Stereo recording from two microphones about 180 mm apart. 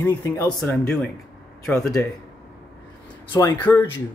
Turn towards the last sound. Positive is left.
turn(degrees=10)  # may be behind; listen again after turning